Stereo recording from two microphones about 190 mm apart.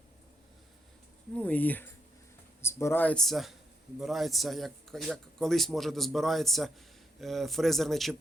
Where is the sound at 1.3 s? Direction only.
5° left (ahead or behind).